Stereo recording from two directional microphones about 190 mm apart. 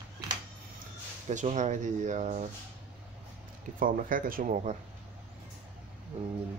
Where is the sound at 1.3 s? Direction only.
40° right (ahead or behind).